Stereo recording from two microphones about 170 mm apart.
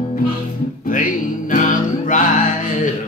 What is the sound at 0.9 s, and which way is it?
Music, 50° left (ahead or behind).